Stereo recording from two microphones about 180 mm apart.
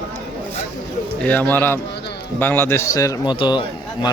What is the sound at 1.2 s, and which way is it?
A man's voice, 10° left (ahead or behind).